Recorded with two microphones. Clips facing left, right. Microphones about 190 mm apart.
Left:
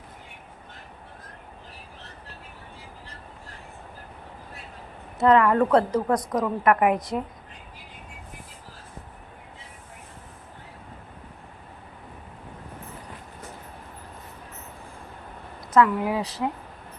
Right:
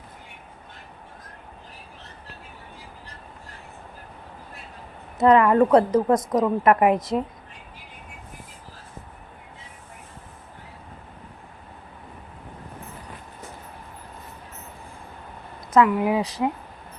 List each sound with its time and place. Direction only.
5.2 s a woman's voice: 20° right (ahead or behind)
15.7 s speech: 15° right (ahead or behind)